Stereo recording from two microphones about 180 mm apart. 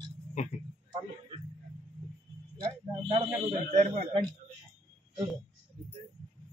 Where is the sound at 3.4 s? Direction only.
45° right (ahead or behind).